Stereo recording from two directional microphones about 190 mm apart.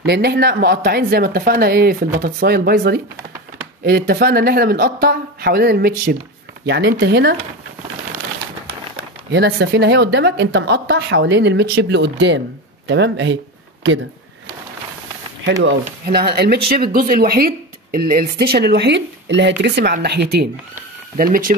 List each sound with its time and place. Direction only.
0.0 s speech: 60° right (ahead or behind)
9.3 s speech: 60° right (ahead or behind)
15.8 s speech: 55° right (ahead or behind)
21.2 s speech: 45° right (ahead or behind)